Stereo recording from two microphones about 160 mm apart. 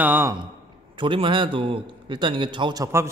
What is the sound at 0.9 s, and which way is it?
A man's voice, 30° right (ahead or behind).